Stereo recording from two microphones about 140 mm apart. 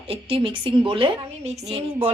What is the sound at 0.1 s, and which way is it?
A woman's voice, 40° right (ahead or behind).